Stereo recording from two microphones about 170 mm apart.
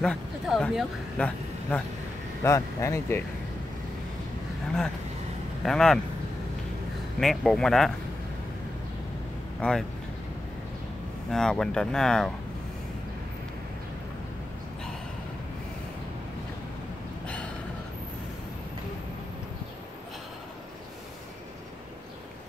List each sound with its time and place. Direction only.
0.0 s speech: 5° left (ahead or behind)
2.4 s speech: 15° left (ahead or behind)
5.6 s speech: 5° left (ahead or behind)
7.2 s speech: centre (ahead or behind)
9.6 s speech: 5° left (ahead or behind)
11.2 s speech: 5° left (ahead or behind)